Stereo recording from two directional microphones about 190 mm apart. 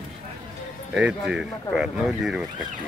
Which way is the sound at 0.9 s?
5° right (ahead or behind).